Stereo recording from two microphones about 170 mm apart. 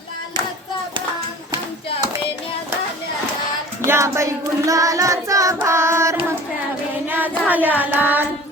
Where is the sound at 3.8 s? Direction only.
15° right (ahead or behind).